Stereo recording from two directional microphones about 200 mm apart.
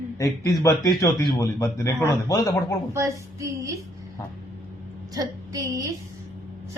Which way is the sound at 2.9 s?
15° right (ahead or behind).